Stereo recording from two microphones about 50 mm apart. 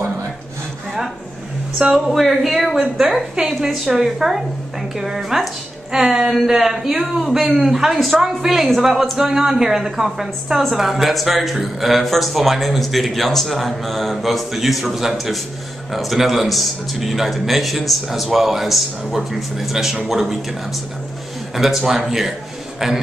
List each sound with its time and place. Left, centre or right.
1.8 s a woman's voice: centre
21.5 s a woman's voice: centre